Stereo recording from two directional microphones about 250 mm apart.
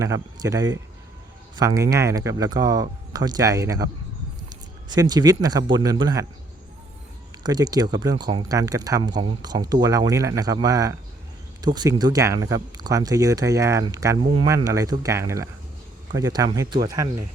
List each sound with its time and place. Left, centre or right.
0.0 s speech: centre
4.9 s speech: centre
7.4 s speech: centre